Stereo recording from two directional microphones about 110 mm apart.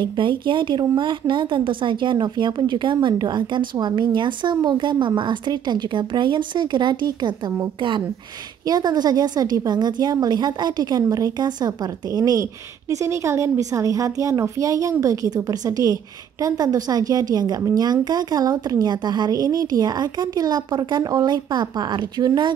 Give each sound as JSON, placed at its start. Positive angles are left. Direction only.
{"t": 0.0, "sound": "a woman's voice", "side_deg": -45}
{"t": 8.6, "sound": "a woman's voice", "side_deg": -35}